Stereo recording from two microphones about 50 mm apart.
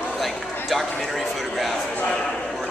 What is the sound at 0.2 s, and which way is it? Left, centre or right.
Speech, centre.